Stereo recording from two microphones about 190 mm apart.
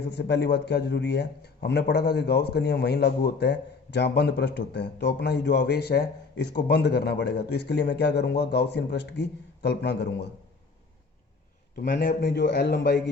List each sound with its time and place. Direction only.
0.0 s a man's voice: 60° left (ahead or behind)
11.8 s a man's voice: 50° left (ahead or behind)